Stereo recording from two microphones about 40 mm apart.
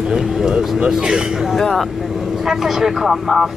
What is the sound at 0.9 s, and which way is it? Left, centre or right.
Speech, centre.